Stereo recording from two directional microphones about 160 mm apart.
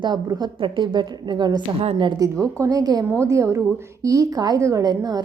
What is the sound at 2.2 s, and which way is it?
A woman's voice, 20° right (ahead or behind).